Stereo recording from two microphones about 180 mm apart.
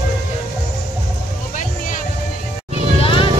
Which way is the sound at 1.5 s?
45° left (ahead or behind).